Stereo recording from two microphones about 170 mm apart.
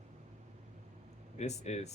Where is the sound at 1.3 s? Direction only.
40° left (ahead or behind).